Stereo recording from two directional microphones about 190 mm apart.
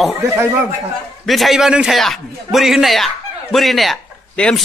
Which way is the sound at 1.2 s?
Centre (ahead or behind).